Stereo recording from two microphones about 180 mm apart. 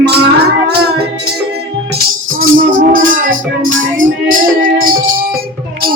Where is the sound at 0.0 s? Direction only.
65° right (ahead or behind).